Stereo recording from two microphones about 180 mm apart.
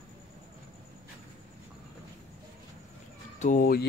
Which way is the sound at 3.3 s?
45° left (ahead or behind).